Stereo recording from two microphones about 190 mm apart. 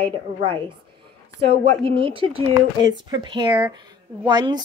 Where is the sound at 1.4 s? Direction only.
30° right (ahead or behind).